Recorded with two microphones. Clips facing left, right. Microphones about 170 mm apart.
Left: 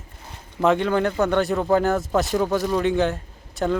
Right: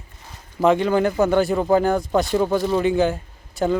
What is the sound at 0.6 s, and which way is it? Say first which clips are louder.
Speech: right 2 dB; centre (ahead or behind).